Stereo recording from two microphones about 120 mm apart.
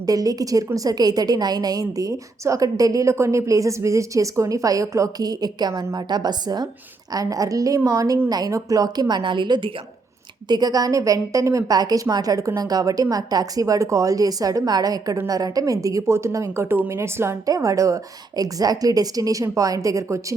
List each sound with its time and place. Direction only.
0.0 s a woman's voice: 30° right (ahead or behind)